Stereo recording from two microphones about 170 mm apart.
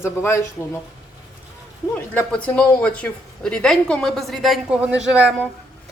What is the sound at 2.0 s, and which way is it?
Speech, 10° left (ahead or behind).